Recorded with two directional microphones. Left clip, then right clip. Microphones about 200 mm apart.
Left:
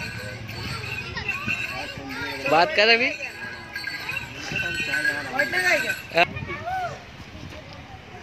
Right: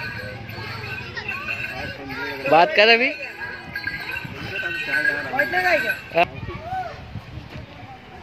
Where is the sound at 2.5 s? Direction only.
10° right (ahead or behind).